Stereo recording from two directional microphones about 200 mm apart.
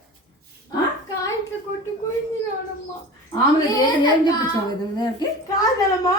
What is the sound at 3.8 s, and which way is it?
Speech, 20° left (ahead or behind).